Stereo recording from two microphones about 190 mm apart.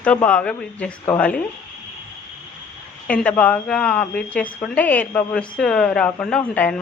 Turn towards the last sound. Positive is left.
turn(degrees=5)  # may be behind; listen again after turning